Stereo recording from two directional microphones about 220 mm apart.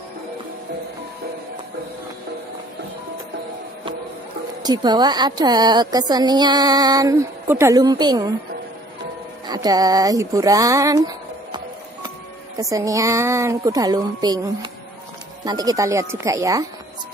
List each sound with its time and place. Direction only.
4.6 s a woman's voice: 20° right (ahead or behind)
9.5 s a woman's voice: 15° right (ahead or behind)